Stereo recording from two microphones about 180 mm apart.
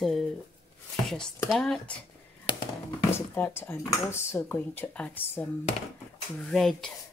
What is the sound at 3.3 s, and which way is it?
Speech, 10° left (ahead or behind).